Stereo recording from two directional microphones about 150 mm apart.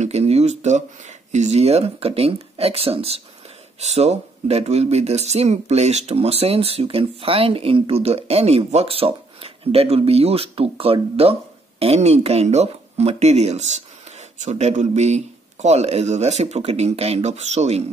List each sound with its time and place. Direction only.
0.0 s speech: 45° right (ahead or behind)